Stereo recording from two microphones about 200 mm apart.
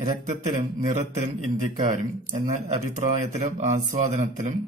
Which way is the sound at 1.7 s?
40° right (ahead or behind).